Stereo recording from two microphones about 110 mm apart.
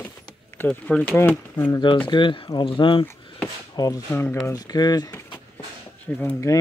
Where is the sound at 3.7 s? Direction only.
35° left (ahead or behind).